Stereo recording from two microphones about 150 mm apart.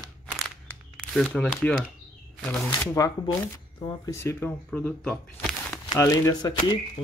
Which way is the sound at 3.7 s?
30° left (ahead or behind).